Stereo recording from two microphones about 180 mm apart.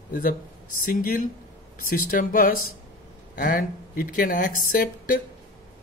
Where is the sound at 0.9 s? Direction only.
50° left (ahead or behind).